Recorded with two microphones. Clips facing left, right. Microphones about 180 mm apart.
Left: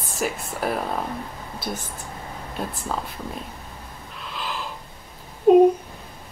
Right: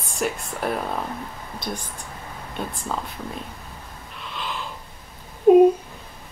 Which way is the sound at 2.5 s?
Centre (ahead or behind).